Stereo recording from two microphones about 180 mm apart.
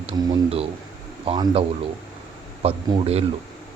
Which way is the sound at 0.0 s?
35° right (ahead or behind).